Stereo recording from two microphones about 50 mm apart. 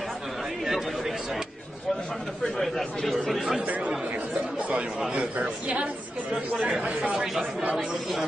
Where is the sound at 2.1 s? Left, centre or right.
Centre.